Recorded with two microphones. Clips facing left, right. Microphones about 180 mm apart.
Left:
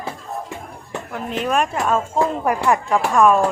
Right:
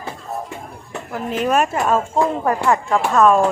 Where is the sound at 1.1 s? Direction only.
Centre (ahead or behind).